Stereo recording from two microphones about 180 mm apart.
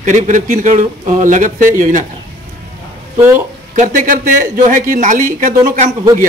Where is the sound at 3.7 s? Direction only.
50° right (ahead or behind).